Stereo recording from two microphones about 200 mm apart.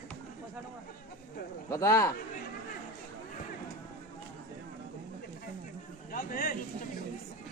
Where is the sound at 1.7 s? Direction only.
15° left (ahead or behind).